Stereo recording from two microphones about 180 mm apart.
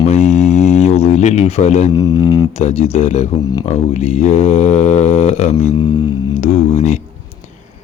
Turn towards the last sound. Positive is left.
turn(degrees=40)  # may be behind; listen again after turning